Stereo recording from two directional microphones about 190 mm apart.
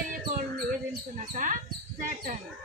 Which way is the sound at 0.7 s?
40° right (ahead or behind).